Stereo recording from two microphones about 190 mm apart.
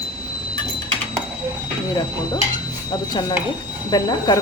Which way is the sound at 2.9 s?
20° left (ahead or behind).